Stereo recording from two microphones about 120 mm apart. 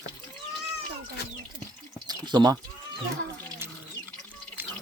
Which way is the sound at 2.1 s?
35° right (ahead or behind).